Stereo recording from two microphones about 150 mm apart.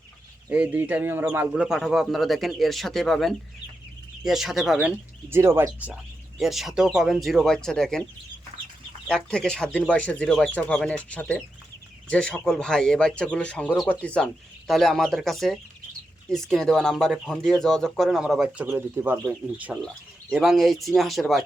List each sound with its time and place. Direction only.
0.5 s a man's voice: 10° right (ahead or behind)
5.3 s speech: 15° right (ahead or behind)
6.4 s a man's voice: centre (ahead or behind)
9.0 s a man's voice: 5° left (ahead or behind)